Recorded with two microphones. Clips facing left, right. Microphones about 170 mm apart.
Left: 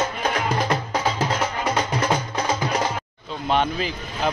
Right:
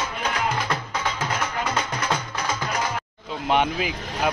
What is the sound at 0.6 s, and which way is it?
Music, 35° left (ahead or behind).